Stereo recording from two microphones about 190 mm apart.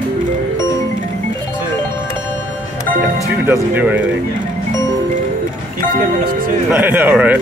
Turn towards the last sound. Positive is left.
turn(degrees=-10)  # may be behind; listen again after turning